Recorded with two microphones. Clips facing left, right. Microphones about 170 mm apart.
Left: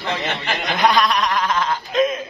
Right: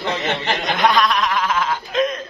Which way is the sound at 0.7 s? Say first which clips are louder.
Left 1 dB; centre (ahead or behind).